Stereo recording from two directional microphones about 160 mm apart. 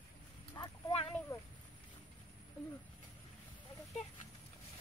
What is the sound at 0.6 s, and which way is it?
Clip-clop, 35° left (ahead or behind).